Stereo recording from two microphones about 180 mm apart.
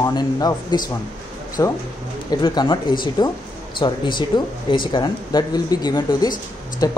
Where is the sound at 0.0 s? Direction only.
20° left (ahead or behind).